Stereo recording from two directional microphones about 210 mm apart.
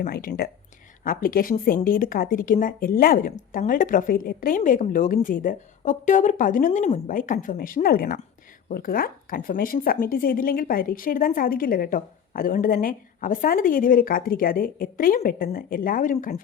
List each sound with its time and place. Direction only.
0.0 s speech: 45° left (ahead or behind)